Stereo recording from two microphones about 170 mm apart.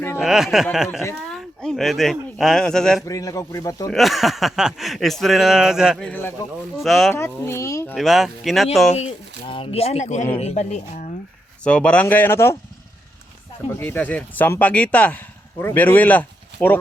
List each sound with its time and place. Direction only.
0.2 s speech: centre (ahead or behind)
3.1 s speech: 20° left (ahead or behind)
3.9 s speech: centre (ahead or behind)
6.1 s speech: 10° left (ahead or behind)
6.8 s speech: centre (ahead or behind)
7.1 s speech: 15° left (ahead or behind)
7.9 s speech: centre (ahead or behind)
9.5 s speech: 35° left (ahead or behind)
11.6 s speech: 5° left (ahead or behind)
13.7 s speech: 10° left (ahead or behind)